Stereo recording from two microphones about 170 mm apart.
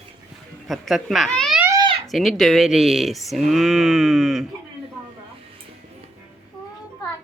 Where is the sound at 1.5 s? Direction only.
15° right (ahead or behind).